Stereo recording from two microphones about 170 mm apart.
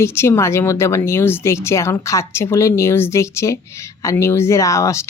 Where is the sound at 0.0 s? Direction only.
15° left (ahead or behind).